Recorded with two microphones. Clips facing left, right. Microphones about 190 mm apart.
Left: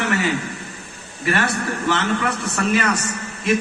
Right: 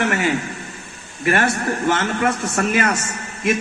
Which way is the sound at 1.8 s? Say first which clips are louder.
Right 2 dB; 50° right (ahead or behind).